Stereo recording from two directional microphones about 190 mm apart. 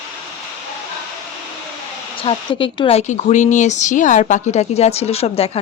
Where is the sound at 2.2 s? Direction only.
25° left (ahead or behind).